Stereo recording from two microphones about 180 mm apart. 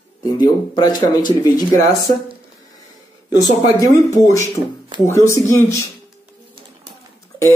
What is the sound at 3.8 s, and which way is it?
Speech, 15° left (ahead or behind).